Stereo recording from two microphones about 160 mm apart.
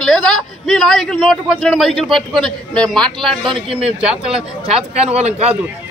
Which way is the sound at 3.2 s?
30° right (ahead or behind).